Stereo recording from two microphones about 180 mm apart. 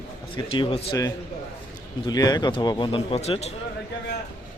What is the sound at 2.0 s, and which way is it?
Speech, 20° left (ahead or behind).